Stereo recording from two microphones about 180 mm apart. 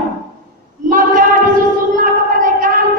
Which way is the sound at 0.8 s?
50° right (ahead or behind).